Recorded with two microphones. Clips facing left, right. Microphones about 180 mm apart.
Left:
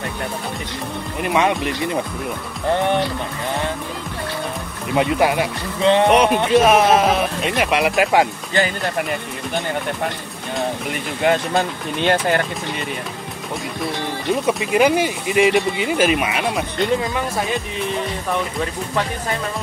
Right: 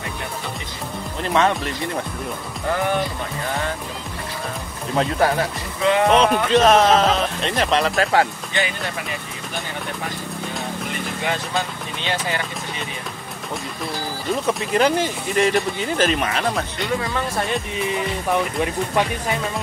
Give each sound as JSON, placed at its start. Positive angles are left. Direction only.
{"t": 1.2, "sound": "speech", "side_deg": 15}
{"t": 4.9, "sound": "speech", "side_deg": 15}
{"t": 5.9, "sound": "speech", "side_deg": 30}
{"t": 6.1, "sound": "speech", "side_deg": 15}
{"t": 11.2, "sound": "speech", "side_deg": 55}
{"t": 14.6, "sound": "speech", "side_deg": 10}
{"t": 17.4, "sound": "music", "side_deg": 0}